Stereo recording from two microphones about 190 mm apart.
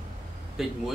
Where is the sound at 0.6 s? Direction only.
Centre (ahead or behind).